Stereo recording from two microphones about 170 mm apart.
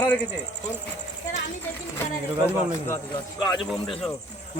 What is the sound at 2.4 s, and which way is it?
Speech, 15° left (ahead or behind).